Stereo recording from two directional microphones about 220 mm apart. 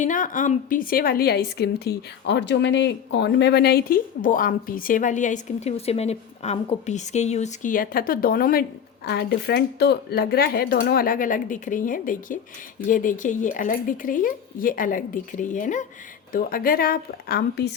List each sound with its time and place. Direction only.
0.0 s a woman's voice: 35° left (ahead or behind)